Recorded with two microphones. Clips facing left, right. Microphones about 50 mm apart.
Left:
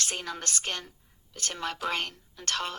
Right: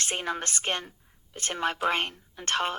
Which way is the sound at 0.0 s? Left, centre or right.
Right.